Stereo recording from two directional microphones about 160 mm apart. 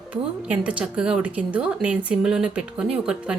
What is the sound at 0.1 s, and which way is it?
Speech, 10° right (ahead or behind).